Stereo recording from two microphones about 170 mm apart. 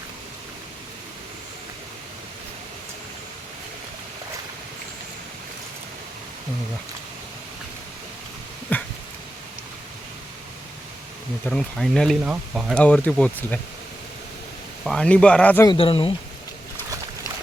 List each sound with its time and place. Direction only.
8.7 s a sound: 10° left (ahead or behind)
11.4 s speech: 5° left (ahead or behind)
12.7 s speech: 10° left (ahead or behind)
14.8 s speech: 5° left (ahead or behind)
15.6 s speech: 30° left (ahead or behind)